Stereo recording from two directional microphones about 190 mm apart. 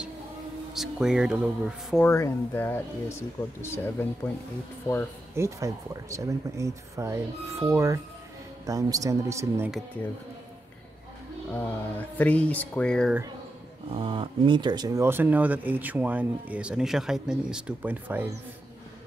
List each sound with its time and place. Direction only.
0.7 s speech: 5° right (ahead or behind)
2.0 s speech: 15° left (ahead or behind)
5.3 s speech: 15° right (ahead or behind)
11.5 s speech: 10° left (ahead or behind)
13.9 s speech: 25° right (ahead or behind); by 18.3 s 10° right (ahead or behind)